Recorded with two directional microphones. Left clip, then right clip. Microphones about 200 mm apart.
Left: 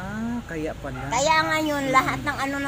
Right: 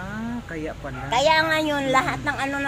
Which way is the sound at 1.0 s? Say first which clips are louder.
Right 2 dB; 25° right (ahead or behind).